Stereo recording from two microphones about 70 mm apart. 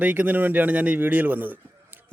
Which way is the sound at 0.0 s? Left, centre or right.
Right.